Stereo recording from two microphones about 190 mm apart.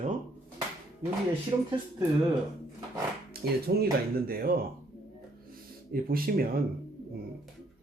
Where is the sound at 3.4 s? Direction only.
55° right (ahead or behind).